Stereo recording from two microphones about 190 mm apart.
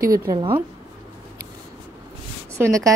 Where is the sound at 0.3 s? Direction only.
25° right (ahead or behind).